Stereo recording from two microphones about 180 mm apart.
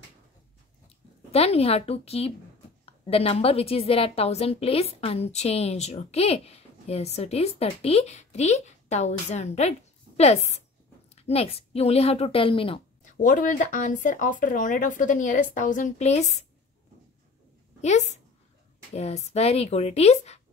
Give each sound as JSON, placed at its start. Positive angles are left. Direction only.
{"t": 1.3, "sound": "a woman's voice", "side_deg": 35}
{"t": 13.0, "sound": "speech", "side_deg": 45}
{"t": 17.8, "sound": "a woman's voice", "side_deg": 40}